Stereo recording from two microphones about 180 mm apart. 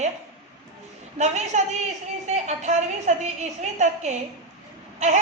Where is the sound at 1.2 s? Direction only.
40° right (ahead or behind).